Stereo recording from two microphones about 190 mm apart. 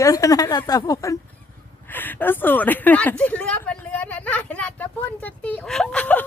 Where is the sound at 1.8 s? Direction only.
10° left (ahead or behind).